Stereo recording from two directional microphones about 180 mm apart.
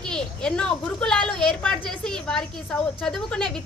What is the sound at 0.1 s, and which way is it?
A woman's voice, 5° left (ahead or behind).